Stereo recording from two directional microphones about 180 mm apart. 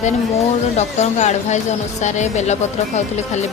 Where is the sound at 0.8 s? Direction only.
40° left (ahead or behind).